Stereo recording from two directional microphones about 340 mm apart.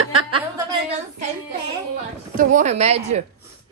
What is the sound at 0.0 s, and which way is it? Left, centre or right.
Chuckle, right.